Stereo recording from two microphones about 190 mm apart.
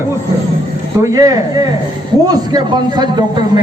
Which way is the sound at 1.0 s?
20° right (ahead or behind).